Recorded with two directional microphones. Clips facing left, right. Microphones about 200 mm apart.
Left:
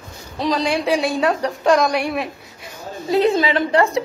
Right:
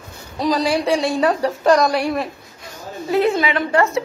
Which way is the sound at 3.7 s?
15° left (ahead or behind).